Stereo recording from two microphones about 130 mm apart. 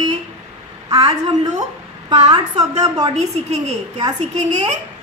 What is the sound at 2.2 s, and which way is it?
Speech, 55° right (ahead or behind).